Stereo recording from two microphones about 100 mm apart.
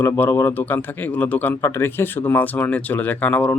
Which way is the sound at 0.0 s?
25° left (ahead or behind).